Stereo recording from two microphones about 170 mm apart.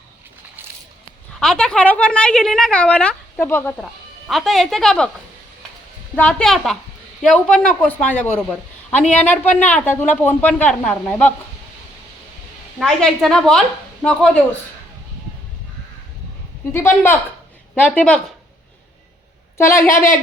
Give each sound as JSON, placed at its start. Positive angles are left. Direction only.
{"t": 1.4, "sound": "a man's voice", "side_deg": 5}
{"t": 6.1, "sound": "a woman's voice", "side_deg": 5}
{"t": 12.8, "sound": "a woman's voice", "side_deg": 0}
{"t": 16.7, "sound": "a man's voice", "side_deg": 15}
{"t": 19.5, "sound": "a woman's voice", "side_deg": 15}